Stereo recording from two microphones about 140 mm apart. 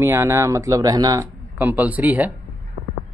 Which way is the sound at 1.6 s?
10° right (ahead or behind).